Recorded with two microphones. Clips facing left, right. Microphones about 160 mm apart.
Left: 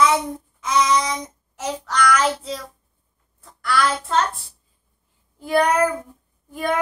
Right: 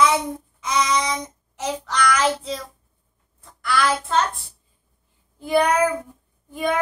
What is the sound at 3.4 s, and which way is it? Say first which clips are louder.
Child singing: even; centre (ahead or behind).